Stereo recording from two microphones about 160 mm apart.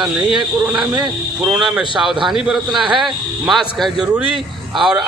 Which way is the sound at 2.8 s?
30° right (ahead or behind).